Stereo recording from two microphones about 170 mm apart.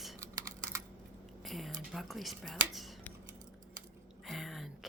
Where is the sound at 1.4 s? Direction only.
Centre (ahead or behind).